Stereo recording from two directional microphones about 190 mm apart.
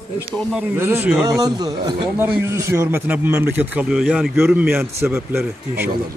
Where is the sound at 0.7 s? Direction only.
10° right (ahead or behind).